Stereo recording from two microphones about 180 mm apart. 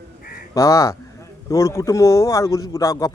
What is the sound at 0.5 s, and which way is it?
Speech, 20° left (ahead or behind).